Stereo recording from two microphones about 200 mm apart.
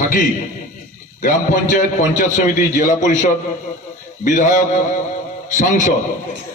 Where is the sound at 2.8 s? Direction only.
40° left (ahead or behind).